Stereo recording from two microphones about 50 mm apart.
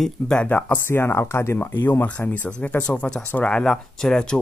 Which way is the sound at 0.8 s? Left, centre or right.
Left.